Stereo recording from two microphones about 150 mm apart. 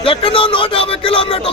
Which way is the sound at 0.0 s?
35° left (ahead or behind).